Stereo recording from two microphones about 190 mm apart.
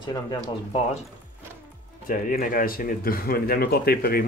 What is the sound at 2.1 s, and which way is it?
Speech, 45° left (ahead or behind).